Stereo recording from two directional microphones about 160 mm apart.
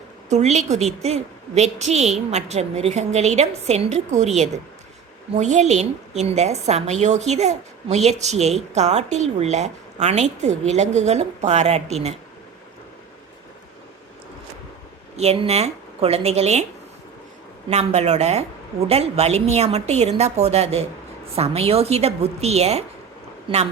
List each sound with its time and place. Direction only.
0.3 s a woman's voice: 45° right (ahead or behind)
5.3 s a woman's voice: 45° right (ahead or behind)
15.1 s speech: 40° right (ahead or behind)
17.7 s a woman's voice: 45° right (ahead or behind)